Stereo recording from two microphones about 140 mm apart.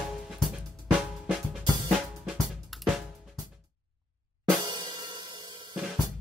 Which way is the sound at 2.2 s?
Centre (ahead or behind).